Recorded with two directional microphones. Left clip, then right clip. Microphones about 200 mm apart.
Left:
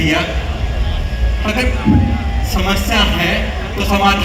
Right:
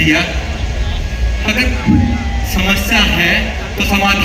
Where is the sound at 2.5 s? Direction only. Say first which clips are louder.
Right 3 dB; 60° left (ahead or behind).